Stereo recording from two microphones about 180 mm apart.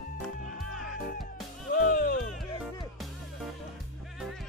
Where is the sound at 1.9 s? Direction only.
55° left (ahead or behind).